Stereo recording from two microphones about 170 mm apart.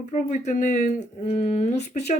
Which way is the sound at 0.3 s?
45° left (ahead or behind).